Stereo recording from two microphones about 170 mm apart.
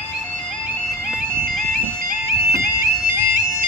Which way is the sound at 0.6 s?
10° right (ahead or behind).